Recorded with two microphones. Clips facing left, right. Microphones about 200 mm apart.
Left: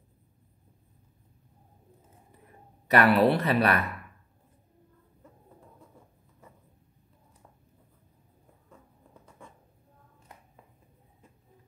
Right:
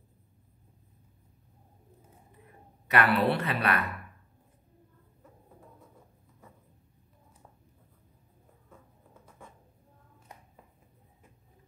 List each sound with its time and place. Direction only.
2.9 s a woman's voice: 35° left (ahead or behind)